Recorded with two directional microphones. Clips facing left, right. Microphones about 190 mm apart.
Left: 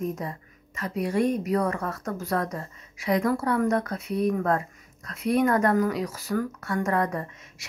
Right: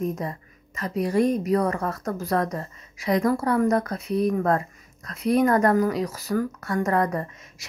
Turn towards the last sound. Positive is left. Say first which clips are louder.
# right 3 dB
turn(degrees=-40)  # may be behind; listen again after turning